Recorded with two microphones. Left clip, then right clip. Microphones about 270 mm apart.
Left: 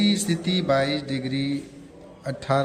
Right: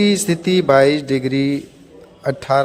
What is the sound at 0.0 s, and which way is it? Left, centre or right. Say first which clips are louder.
Speech: right 8 dB; centre.